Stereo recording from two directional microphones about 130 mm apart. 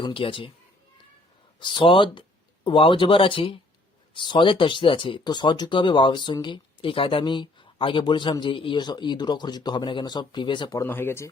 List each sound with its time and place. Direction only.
0.0 s speech: 40° left (ahead or behind)
1.5 s speech: 35° left (ahead or behind)
10.8 s speech: 15° left (ahead or behind)